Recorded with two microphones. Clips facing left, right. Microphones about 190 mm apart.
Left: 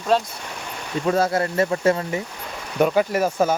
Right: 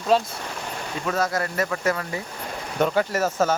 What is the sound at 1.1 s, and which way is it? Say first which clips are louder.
Speech: left 5 dB; 30° left (ahead or behind).